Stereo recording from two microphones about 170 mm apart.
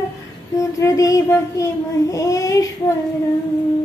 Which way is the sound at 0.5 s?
20° left (ahead or behind).